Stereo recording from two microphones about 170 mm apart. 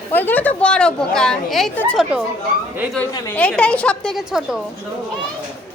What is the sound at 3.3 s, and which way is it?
A woman's voice, 5° left (ahead or behind).